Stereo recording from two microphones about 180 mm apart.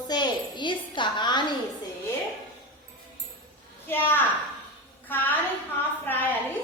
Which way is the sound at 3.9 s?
10° left (ahead or behind).